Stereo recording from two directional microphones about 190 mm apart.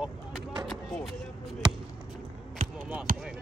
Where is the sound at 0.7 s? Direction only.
Centre (ahead or behind).